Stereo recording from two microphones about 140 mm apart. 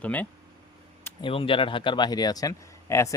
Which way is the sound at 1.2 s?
40° left (ahead or behind).